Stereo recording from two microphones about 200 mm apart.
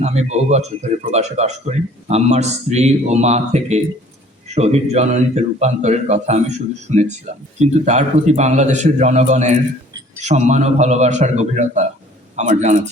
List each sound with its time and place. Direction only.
0.0 s a man's voice: 30° right (ahead or behind)